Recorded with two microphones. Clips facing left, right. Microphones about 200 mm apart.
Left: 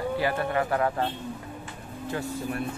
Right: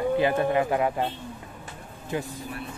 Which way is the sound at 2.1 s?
15° right (ahead or behind).